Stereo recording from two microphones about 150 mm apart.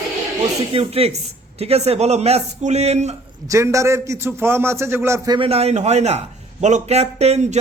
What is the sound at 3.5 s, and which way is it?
A man's voice, 20° right (ahead or behind).